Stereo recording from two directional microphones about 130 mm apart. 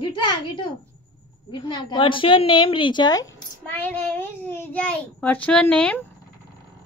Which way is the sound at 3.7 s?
15° left (ahead or behind).